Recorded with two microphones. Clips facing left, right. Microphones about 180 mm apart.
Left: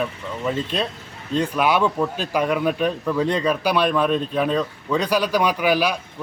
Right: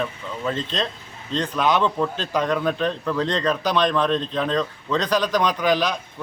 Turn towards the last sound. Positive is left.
turn(degrees=10)  # may be behind; listen again after turning